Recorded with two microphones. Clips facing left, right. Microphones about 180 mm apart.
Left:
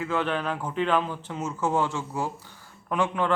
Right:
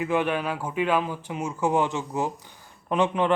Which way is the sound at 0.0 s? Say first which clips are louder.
Right 3 dB; 15° right (ahead or behind).